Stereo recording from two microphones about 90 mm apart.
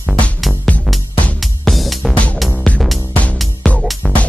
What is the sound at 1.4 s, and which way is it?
Music, centre (ahead or behind).